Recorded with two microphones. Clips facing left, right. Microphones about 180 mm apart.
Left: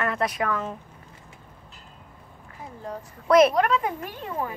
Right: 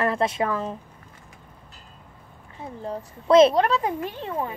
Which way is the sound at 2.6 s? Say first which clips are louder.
Right 4 dB; 25° right (ahead or behind).